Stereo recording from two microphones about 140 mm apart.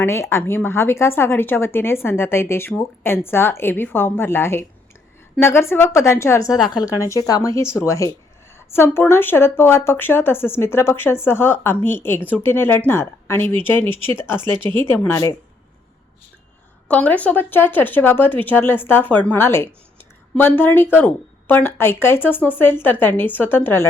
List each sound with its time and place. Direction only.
0.0 s a woman's voice: 20° left (ahead or behind)
13.9 s speech: 40° right (ahead or behind)
14.7 s speech: 15° left (ahead or behind)
16.9 s speech: 10° left (ahead or behind)